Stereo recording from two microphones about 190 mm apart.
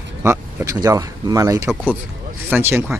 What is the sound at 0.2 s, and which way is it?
Speech, 15° right (ahead or behind).